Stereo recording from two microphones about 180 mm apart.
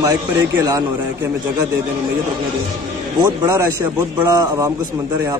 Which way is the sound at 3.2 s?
15° right (ahead or behind).